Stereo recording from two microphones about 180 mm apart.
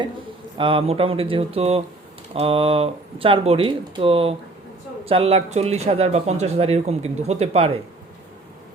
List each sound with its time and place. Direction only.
0.5 s speech: 30° right (ahead or behind)